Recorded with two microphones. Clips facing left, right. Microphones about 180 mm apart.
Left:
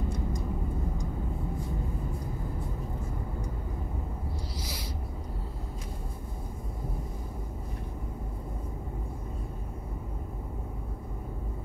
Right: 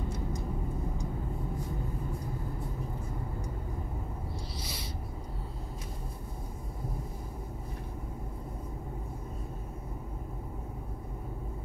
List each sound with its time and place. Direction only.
4.6 s owl: 75° left (ahead or behind)